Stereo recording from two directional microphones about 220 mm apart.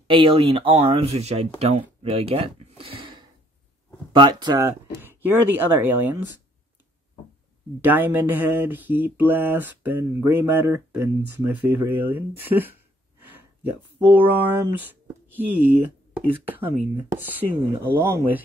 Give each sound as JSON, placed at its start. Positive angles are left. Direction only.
{"t": 0.1, "sound": "speech", "side_deg": -25}
{"t": 7.8, "sound": "speech", "side_deg": -10}